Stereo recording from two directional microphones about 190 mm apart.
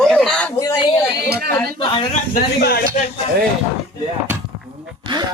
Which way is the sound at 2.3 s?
55° left (ahead or behind).